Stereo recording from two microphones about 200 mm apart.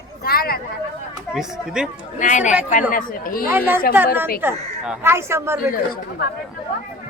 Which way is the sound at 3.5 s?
10° right (ahead or behind).